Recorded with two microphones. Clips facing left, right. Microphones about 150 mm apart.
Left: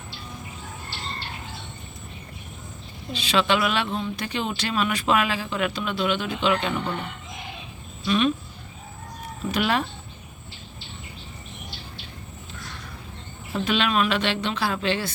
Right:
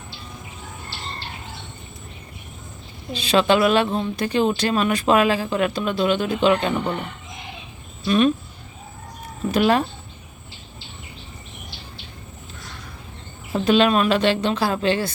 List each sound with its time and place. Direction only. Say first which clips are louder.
3.1 s speech: right 5 dB; 45° right (ahead or behind)
8.0 s speech: right 4 dB; 45° right (ahead or behind)
9.5 s speech: right 6 dB; 40° right (ahead or behind)
13.5 s speech: right 7 dB; 40° right (ahead or behind)